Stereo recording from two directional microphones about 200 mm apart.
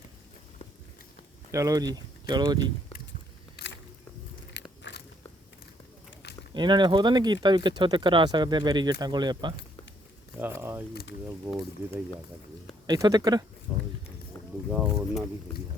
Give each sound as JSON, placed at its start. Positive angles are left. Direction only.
{"t": 1.5, "sound": "speech", "side_deg": -15}
{"t": 3.6, "sound": "a sound", "side_deg": 50}
{"t": 4.5, "sound": "biting", "side_deg": 60}
{"t": 6.5, "sound": "speech", "side_deg": -20}
{"t": 10.4, "sound": "speech", "side_deg": -10}
{"t": 12.9, "sound": "speech", "side_deg": -20}
{"t": 14.7, "sound": "speech", "side_deg": -5}